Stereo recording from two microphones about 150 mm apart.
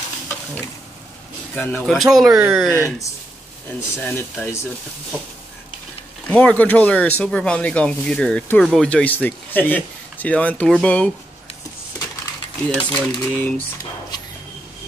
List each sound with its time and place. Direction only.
1.5 s speech: 10° left (ahead or behind)
2.0 s speech: centre (ahead or behind)
2.7 s speech: 20° left (ahead or behind)
6.2 s speech: 10° left (ahead or behind)
12.6 s speech: 10° left (ahead or behind)